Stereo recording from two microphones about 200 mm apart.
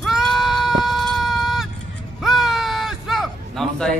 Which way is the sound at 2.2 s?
Centre (ahead or behind).